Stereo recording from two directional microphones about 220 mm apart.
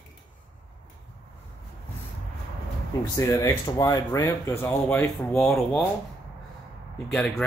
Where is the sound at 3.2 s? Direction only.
15° left (ahead or behind).